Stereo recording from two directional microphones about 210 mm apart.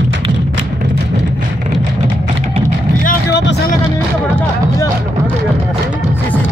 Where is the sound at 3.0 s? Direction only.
55° left (ahead or behind).